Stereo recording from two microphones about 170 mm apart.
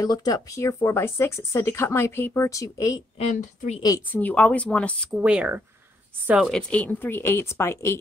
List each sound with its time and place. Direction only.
0.0 s speech: 20° left (ahead or behind)
3.2 s a woman's voice: 40° left (ahead or behind)
4.1 s speech: 10° left (ahead or behind)
5.1 s speech: 5° right (ahead or behind); by 8.0 s 15° left (ahead or behind)